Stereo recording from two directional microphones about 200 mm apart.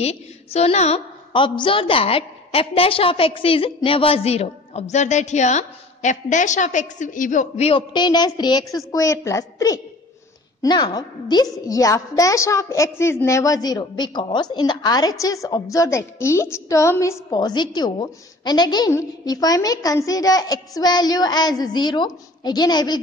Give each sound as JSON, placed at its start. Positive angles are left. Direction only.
{"t": 0.0, "sound": "a woman's voice", "side_deg": 30}